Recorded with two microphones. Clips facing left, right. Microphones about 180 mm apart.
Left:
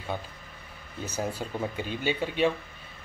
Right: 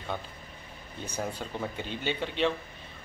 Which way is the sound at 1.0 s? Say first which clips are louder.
Left 3 dB; 5° left (ahead or behind).